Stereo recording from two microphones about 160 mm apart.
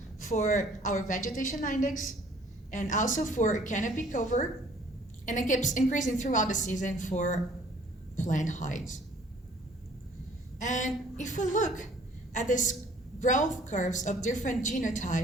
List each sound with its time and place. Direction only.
0.2 s a woman's voice: 55° left (ahead or behind)
10.6 s a woman's voice: 50° left (ahead or behind)